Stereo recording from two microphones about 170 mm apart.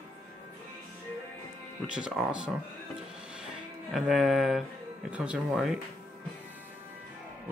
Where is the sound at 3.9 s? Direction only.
Centre (ahead or behind).